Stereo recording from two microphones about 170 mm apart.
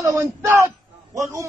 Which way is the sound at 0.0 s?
20° right (ahead or behind).